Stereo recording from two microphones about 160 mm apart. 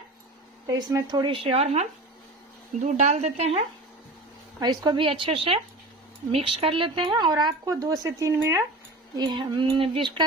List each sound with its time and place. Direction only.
0.7 s speech: 25° right (ahead or behind); by 3.6 s 40° right (ahead or behind)
4.6 s a woman's voice: 25° right (ahead or behind)